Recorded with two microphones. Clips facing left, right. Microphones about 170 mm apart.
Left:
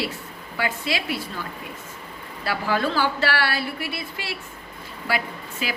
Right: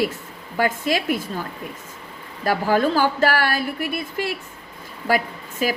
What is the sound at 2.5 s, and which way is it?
A woman's voice, 45° right (ahead or behind).